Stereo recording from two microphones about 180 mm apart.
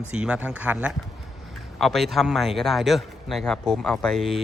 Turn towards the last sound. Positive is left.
turn(degrees=0)  # may be behind; listen again after turning